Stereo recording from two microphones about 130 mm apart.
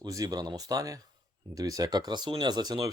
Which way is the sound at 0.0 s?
30° right (ahead or behind).